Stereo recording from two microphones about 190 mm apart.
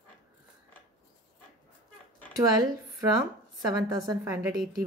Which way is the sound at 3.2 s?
20° right (ahead or behind).